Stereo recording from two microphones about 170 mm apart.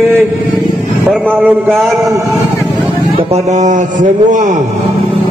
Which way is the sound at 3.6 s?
45° right (ahead or behind).